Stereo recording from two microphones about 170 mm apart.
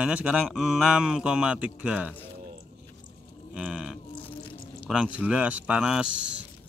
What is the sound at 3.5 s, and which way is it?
Livestock, 5° right (ahead or behind).